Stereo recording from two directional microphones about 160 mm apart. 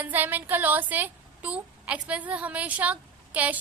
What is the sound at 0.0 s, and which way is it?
A woman's voice, 10° right (ahead or behind).